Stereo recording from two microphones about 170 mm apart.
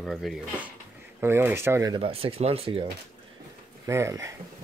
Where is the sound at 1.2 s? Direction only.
10° right (ahead or behind).